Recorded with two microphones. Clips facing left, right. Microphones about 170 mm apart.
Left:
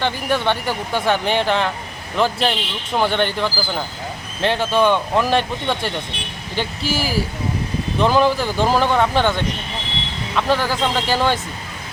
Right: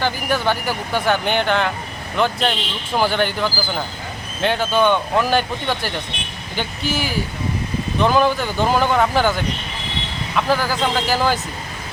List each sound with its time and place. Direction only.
0.0 s speech: centre (ahead or behind)